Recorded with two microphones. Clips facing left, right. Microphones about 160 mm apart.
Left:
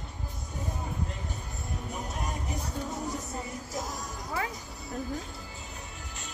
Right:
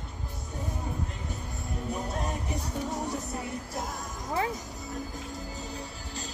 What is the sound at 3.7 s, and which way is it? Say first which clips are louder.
Speech: even; 55° right (ahead or behind).